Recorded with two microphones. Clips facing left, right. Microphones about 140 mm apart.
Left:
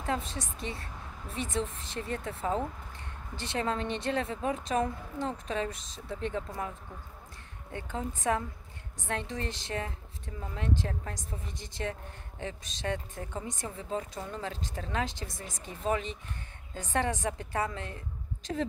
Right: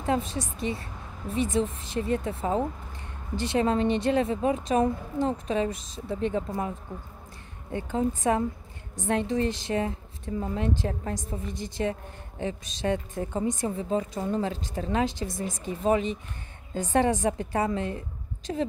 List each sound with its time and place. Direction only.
0.0 s speech: 15° right (ahead or behind)
7.7 s speech: 15° right (ahead or behind)